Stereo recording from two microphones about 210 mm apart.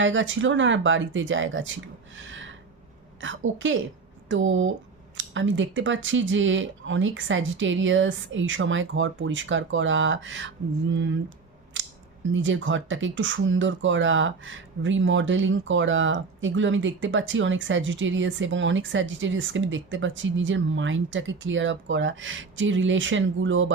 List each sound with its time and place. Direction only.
0.0 s speech: 65° right (ahead or behind)
11.8 s scissors: 65° right (ahead or behind)
12.3 s speech: 65° right (ahead or behind)